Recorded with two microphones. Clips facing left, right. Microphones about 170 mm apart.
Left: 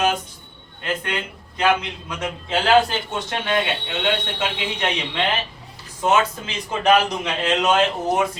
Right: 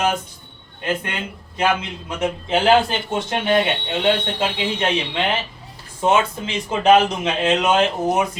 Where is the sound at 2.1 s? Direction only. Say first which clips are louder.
Right 6 dB; 20° right (ahead or behind).